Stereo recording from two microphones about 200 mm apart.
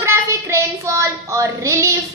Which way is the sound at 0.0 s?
15° right (ahead or behind).